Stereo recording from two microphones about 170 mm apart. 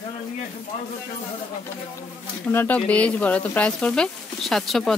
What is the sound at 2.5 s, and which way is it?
Speech, 10° left (ahead or behind).